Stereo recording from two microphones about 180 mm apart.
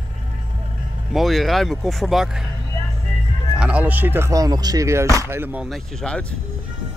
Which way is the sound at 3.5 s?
5° right (ahead or behind).